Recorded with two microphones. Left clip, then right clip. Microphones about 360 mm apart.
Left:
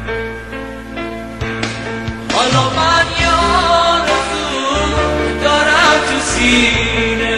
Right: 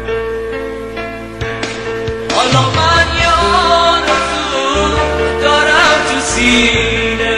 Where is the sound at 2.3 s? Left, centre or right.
Centre.